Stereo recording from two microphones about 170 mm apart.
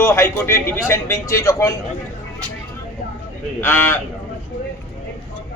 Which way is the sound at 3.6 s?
10° left (ahead or behind).